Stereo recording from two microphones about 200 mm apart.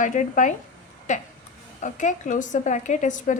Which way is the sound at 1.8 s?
40° left (ahead or behind).